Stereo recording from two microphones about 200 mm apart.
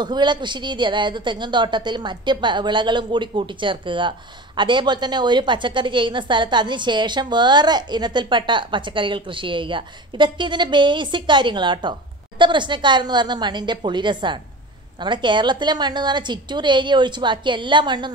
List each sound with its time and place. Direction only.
0.0 s a woman's voice: 20° right (ahead or behind)